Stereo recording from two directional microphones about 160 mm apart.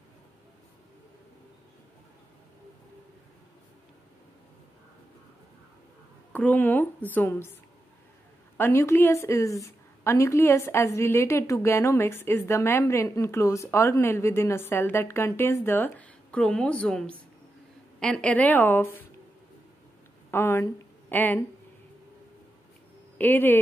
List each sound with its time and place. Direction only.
6.3 s a woman's voice: 10° left (ahead or behind)
8.5 s a woman's voice: 15° left (ahead or behind)
20.2 s speech: 15° left (ahead or behind)
23.1 s a woman's voice: 10° left (ahead or behind)